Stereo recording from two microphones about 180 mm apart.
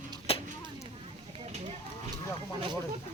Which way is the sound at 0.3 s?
35° left (ahead or behind).